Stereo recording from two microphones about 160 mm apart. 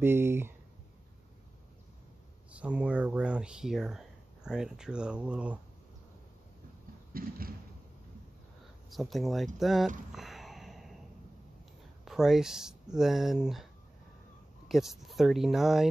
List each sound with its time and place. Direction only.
0.0 s speech: 15° right (ahead or behind)
2.5 s speech: 10° right (ahead or behind)
7.2 s a sound: 65° right (ahead or behind)
8.9 s speech: centre (ahead or behind)
10.1 s gasp: centre (ahead or behind)
12.0 s speech: centre (ahead or behind)
14.7 s speech: centre (ahead or behind)